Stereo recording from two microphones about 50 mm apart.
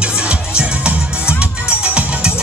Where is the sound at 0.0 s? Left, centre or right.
Right.